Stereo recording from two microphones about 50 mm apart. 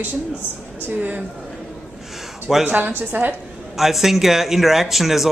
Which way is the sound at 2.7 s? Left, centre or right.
Right.